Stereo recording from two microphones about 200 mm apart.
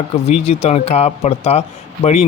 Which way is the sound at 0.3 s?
30° left (ahead or behind).